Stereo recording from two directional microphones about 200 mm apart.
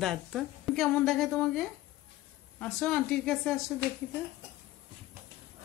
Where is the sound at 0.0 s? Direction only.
Centre (ahead or behind).